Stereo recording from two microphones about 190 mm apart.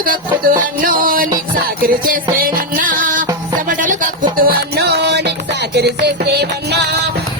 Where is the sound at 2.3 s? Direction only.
50° right (ahead or behind).